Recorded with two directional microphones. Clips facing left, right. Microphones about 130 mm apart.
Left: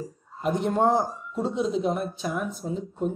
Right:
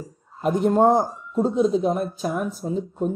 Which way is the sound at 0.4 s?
45° right (ahead or behind).